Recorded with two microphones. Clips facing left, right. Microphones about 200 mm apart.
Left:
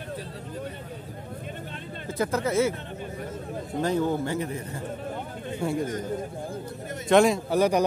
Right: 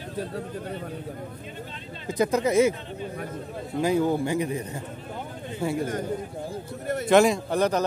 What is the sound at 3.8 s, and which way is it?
Speech, 10° right (ahead or behind).